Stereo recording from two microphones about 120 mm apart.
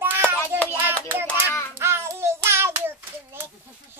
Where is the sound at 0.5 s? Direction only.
20° right (ahead or behind).